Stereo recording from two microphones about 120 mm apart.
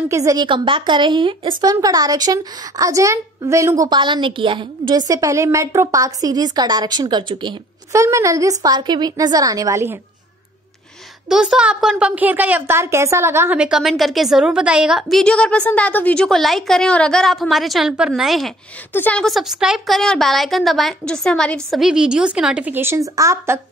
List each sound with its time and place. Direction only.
0.1 s a woman's voice: 30° right (ahead or behind)
0.5 s speech: 45° right (ahead or behind)
1.7 s a woman's voice: 30° right (ahead or behind)
7.9 s a woman's voice: 25° right (ahead or behind)
11.2 s a woman's voice: 5° right (ahead or behind); by 13.6 s 20° right (ahead or behind)
13.6 s a woman's voice: 5° right (ahead or behind)
18.9 s a woman's voice: 10° left (ahead or behind); by 23.6 s 20° right (ahead or behind)